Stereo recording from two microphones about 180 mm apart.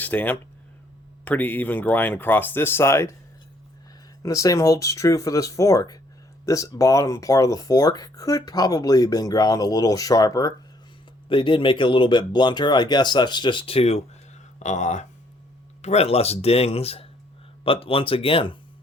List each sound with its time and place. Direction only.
0.0 s speech: 10° left (ahead or behind)
4.2 s speech: 20° left (ahead or behind)